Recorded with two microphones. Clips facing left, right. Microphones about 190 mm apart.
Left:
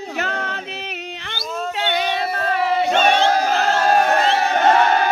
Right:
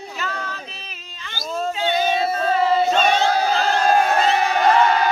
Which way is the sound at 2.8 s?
65° left (ahead or behind).